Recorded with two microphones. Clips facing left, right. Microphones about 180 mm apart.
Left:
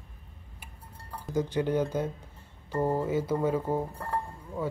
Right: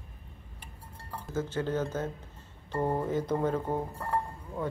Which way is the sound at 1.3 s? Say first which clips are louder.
Left 4 dB; 15° left (ahead or behind).